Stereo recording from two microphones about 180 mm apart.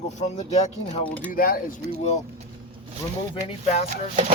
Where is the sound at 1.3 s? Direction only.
50° left (ahead or behind).